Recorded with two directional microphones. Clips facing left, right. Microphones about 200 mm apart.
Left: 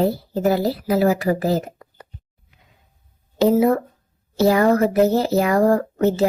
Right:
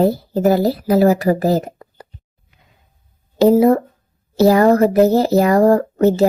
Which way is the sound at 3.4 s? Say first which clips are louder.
Right 5 dB; 35° right (ahead or behind).